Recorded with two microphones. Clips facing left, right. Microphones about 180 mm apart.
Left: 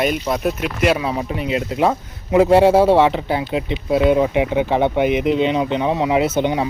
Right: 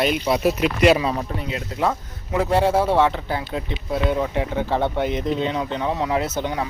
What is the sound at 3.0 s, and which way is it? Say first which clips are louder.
Speech: left 4 dB; 15° left (ahead or behind).